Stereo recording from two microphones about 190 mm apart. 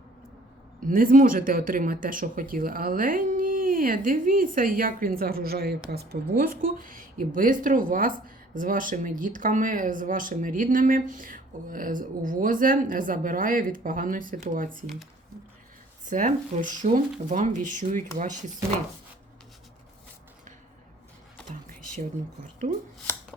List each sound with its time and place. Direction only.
0.9 s speech: 45° right (ahead or behind)
16.0 s speech: 45° right (ahead or behind)